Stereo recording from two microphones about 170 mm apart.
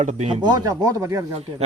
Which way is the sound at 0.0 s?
45° right (ahead or behind).